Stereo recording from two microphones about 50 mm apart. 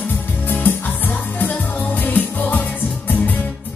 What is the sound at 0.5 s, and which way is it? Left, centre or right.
Music, left.